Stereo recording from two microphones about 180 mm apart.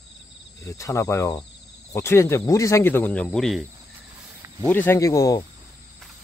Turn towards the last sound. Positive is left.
turn(degrees=20)  # may be behind; listen again after turning